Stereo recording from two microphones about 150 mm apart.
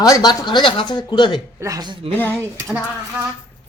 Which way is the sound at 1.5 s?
20° right (ahead or behind).